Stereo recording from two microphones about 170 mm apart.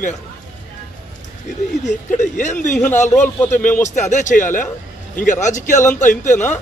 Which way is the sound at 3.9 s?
45° left (ahead or behind).